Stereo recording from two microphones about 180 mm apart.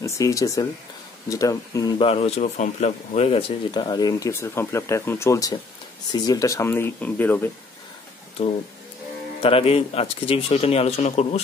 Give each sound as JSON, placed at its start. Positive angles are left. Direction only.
{"t": 0.0, "sound": "speech", "side_deg": 20}
{"t": 9.4, "sound": "speech", "side_deg": 30}